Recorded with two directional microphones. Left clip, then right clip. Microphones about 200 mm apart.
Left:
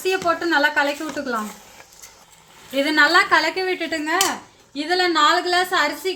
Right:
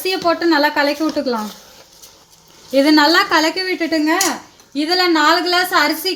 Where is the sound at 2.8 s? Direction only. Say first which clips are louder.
Right 4 dB; 45° right (ahead or behind).